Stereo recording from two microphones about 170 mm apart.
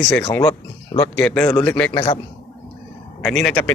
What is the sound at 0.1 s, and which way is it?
Speech, 10° left (ahead or behind).